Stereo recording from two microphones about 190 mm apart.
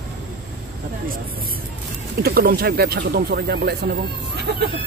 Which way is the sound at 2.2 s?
50° right (ahead or behind).